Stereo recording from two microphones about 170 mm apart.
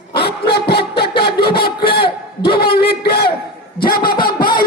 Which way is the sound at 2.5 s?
65° left (ahead or behind).